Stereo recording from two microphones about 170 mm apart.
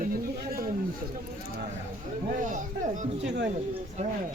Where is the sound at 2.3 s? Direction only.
50° right (ahead or behind).